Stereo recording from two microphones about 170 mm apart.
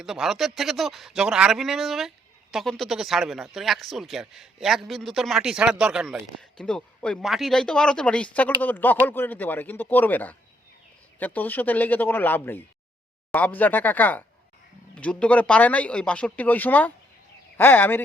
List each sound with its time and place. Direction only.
0.0 s speech: 5° right (ahead or behind)